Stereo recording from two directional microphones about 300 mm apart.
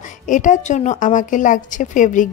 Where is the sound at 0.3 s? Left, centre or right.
Left.